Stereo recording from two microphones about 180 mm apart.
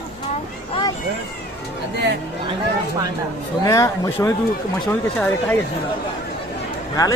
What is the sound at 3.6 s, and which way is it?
Speech, 20° left (ahead or behind).